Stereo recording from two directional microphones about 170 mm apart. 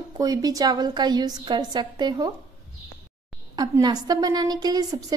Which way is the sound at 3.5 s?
25° right (ahead or behind).